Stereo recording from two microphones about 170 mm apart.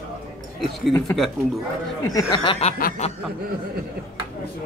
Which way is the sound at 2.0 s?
20° left (ahead or behind).